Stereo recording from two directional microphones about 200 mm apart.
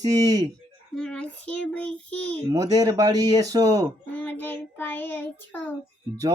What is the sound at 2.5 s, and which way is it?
Speech, 15° right (ahead or behind).